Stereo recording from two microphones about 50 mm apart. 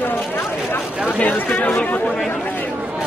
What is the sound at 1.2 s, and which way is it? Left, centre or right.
Speech, left.